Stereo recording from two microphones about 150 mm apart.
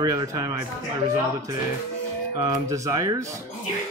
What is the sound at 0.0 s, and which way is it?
Speech, 25° right (ahead or behind).